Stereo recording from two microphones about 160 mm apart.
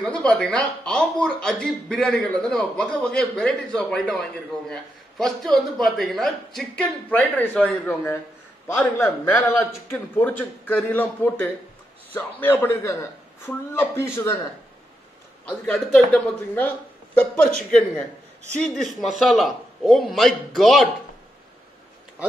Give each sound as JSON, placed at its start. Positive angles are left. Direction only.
{"t": 0.0, "sound": "speech", "side_deg": 5}
{"t": 9.2, "sound": "a man's voice", "side_deg": 20}
{"t": 15.6, "sound": "speech", "side_deg": 5}